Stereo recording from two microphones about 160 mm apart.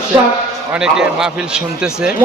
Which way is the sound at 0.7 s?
5° right (ahead or behind).